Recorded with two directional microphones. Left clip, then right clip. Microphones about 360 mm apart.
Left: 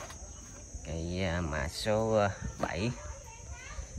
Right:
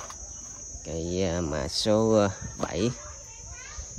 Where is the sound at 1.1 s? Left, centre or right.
Centre.